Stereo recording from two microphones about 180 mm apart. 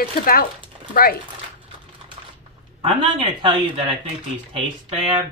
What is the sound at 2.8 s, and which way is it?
Speech, 30° right (ahead or behind).